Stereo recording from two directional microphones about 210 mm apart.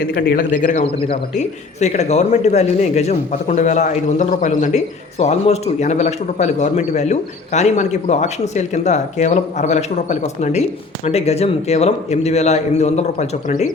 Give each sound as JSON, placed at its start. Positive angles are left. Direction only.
{"t": 0.0, "sound": "a man's voice", "side_deg": 50}